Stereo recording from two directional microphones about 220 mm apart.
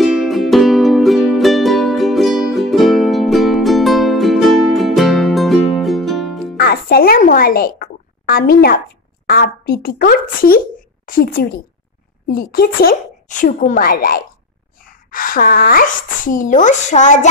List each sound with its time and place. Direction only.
0.0 s music: centre (ahead or behind)
6.5 s music: 45° left (ahead or behind)
9.2 s a woman's voice: 45° left (ahead or behind)